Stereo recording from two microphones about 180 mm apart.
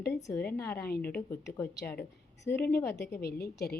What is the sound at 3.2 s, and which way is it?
Speech, 60° left (ahead or behind).